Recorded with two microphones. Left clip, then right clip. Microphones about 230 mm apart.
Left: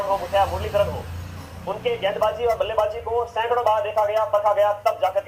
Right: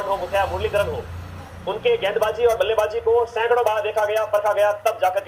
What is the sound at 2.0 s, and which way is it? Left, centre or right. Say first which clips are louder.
Speech: right 2 dB; right.